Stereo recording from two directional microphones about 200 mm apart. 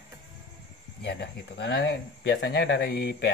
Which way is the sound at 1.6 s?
60° left (ahead or behind).